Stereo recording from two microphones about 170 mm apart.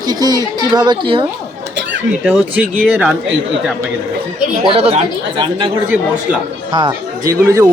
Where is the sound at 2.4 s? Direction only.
10° right (ahead or behind).